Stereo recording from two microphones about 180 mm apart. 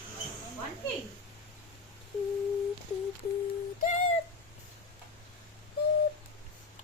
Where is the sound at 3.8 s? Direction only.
40° left (ahead or behind).